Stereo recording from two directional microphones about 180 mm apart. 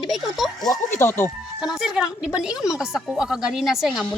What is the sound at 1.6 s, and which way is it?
Speech, 5° right (ahead or behind).